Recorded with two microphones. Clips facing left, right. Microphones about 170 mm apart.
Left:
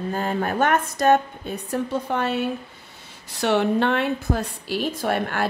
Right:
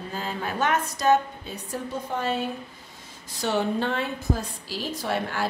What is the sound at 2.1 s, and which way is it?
A woman's voice, 70° left (ahead or behind).